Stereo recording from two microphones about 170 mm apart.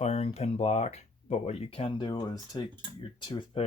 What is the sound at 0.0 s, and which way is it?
Speech, 40° left (ahead or behind).